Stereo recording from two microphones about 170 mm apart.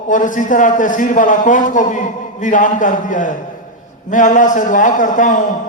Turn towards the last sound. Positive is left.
turn(degrees=50)  # may be behind; listen again after turning